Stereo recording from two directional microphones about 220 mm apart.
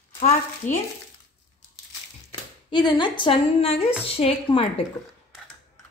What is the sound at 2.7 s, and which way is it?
Speech, 20° left (ahead or behind).